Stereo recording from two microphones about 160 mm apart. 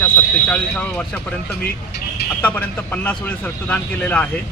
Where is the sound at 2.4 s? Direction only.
10° left (ahead or behind).